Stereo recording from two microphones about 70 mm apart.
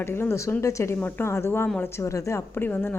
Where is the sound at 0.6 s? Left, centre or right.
Left.